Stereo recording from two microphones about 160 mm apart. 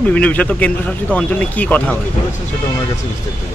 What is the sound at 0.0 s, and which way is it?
Speech, 10° left (ahead or behind).